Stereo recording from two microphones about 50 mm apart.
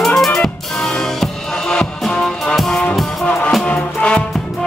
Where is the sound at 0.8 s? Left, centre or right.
Centre.